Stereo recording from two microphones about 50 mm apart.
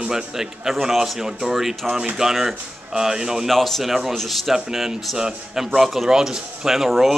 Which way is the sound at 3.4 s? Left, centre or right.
Centre.